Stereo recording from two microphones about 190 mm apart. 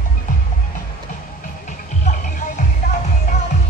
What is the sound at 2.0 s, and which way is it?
Music, 40° left (ahead or behind).